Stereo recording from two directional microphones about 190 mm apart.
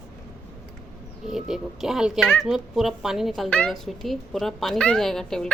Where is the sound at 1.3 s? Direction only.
Centre (ahead or behind).